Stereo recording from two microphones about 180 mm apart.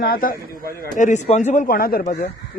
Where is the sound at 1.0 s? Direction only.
40° left (ahead or behind).